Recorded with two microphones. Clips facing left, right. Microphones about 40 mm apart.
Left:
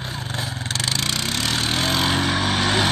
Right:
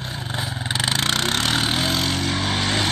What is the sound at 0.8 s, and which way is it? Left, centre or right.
Vehicle, right.